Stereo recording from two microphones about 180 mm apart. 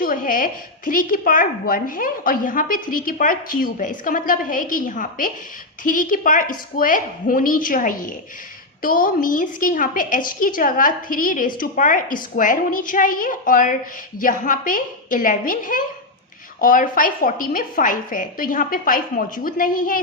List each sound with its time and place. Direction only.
0.0 s a woman's voice: 50° left (ahead or behind)